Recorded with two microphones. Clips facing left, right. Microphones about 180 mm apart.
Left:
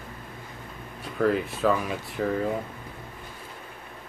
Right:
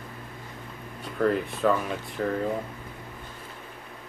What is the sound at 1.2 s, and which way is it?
Speech, centre (ahead or behind).